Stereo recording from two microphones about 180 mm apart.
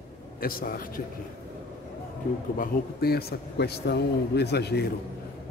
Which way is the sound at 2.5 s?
55° left (ahead or behind).